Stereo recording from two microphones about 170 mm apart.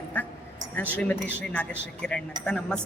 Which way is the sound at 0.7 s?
10° left (ahead or behind).